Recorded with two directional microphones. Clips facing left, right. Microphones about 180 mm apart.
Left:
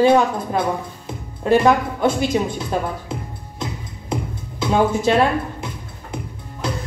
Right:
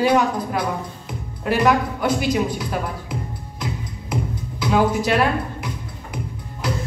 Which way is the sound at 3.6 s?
25° left (ahead or behind).